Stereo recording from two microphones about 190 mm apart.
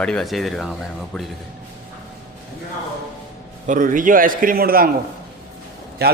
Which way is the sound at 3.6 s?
45° right (ahead or behind).